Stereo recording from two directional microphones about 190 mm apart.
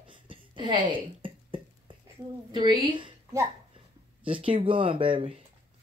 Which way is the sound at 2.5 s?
25° right (ahead or behind).